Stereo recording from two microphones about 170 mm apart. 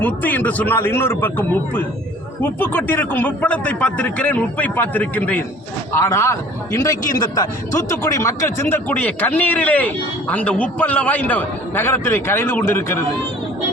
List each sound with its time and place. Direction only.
0.0 s a man's voice: 10° left (ahead or behind)